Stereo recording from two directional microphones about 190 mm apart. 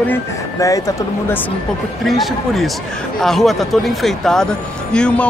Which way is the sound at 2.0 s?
Centre (ahead or behind).